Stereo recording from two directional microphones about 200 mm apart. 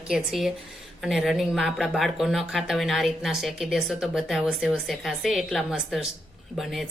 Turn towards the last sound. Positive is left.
turn(degrees=0)  # may be behind; listen again after turning